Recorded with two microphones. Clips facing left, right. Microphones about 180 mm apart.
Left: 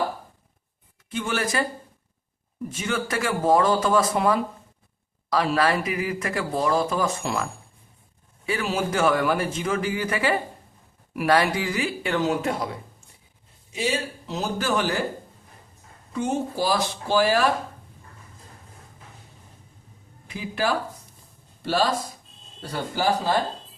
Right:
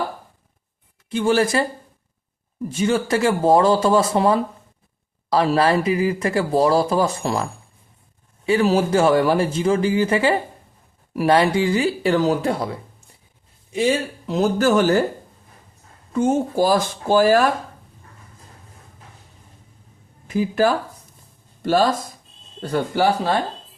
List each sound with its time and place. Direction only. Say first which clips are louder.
1.1 s speech: right 8 dB; 30° right (ahead or behind)
2.7 s a man's voice: right 8 dB; 30° right (ahead or behind)
8.4 s a man's voice: right 9 dB; 30° right (ahead or behind)
14.3 s speech: right 10 dB; 50° right (ahead or behind)
16.1 s speech: right 7 dB; 45° right (ahead or behind)
20.2 s speech: right 8 dB; 45° right (ahead or behind)
22.6 s speech: right 6 dB; 55° right (ahead or behind)